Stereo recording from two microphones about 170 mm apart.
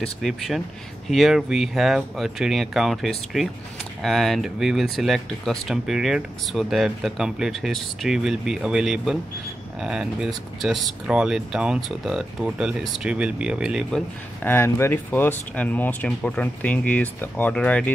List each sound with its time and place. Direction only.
0.0 s speech: centre (ahead or behind)
14.4 s speech: 10° left (ahead or behind)